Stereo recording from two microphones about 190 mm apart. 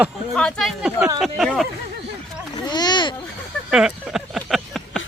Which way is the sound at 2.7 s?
20° left (ahead or behind).